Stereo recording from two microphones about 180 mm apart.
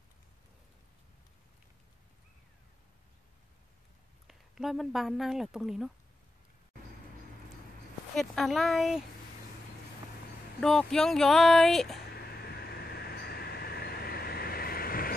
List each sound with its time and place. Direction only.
4.3 s speech: centre (ahead or behind)
8.2 s speech: centre (ahead or behind)
10.6 s speech: 5° left (ahead or behind)
12.1 s vehicle: 60° left (ahead or behind)